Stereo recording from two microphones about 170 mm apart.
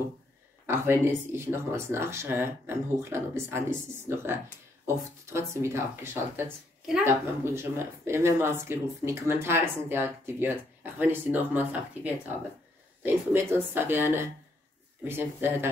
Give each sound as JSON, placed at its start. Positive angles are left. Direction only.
{"t": 0.7, "sound": "speech", "side_deg": -15}